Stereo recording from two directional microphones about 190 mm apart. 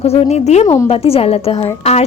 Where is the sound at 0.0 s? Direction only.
30° left (ahead or behind).